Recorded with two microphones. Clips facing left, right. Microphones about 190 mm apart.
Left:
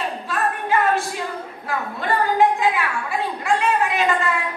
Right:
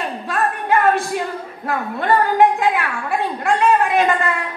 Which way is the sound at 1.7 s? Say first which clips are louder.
Right 5 dB; 55° right (ahead or behind).